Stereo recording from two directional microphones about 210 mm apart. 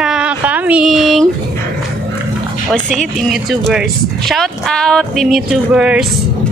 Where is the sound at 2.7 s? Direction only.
Centre (ahead or behind).